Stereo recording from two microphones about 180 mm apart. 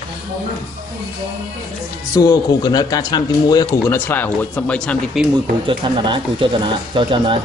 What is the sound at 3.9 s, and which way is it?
Speech, 10° left (ahead or behind).